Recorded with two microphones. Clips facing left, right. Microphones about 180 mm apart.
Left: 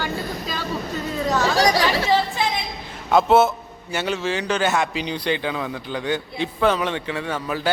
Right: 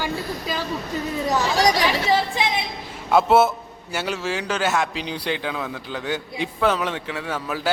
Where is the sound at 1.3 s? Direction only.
15° right (ahead or behind).